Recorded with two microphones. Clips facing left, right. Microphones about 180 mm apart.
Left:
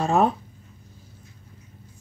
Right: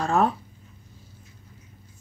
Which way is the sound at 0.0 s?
20° left (ahead or behind).